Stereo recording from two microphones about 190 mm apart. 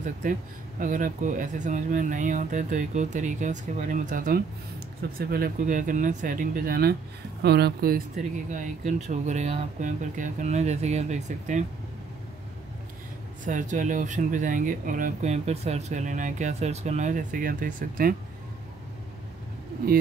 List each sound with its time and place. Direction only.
0.0 s speech: 45° right (ahead or behind)
13.5 s speech: 40° right (ahead or behind)